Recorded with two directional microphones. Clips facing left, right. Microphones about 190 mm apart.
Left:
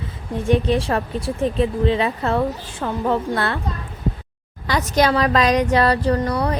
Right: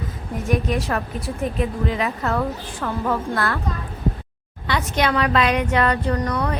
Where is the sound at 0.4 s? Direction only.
30° left (ahead or behind).